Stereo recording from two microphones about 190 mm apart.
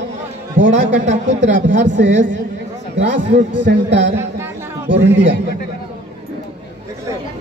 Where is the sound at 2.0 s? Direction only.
75° right (ahead or behind).